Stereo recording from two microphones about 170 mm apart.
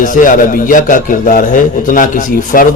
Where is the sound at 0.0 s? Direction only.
50° left (ahead or behind).